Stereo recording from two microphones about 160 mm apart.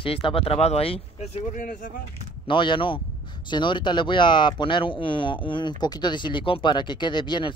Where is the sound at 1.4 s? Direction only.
55° left (ahead or behind).